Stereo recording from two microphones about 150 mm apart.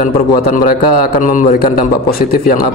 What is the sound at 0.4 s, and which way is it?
Speech, 85° left.